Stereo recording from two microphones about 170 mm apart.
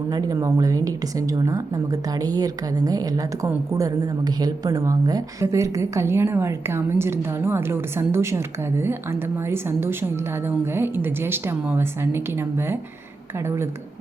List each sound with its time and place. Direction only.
0.1 s a woman's voice: 20° right (ahead or behind)